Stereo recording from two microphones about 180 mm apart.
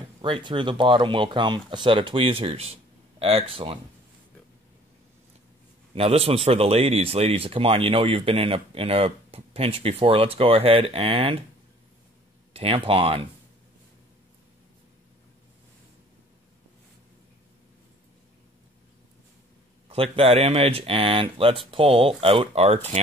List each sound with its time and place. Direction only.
0.2 s speech: 25° right (ahead or behind)
5.9 s speech: 35° right (ahead or behind)
12.5 s speech: 30° right (ahead or behind)
19.9 s speech: 35° right (ahead or behind)